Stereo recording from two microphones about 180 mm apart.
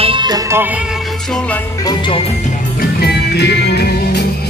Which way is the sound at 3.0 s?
70° left (ahead or behind).